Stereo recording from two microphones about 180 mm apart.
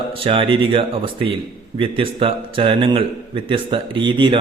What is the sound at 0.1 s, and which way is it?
A man's voice, 30° right (ahead or behind).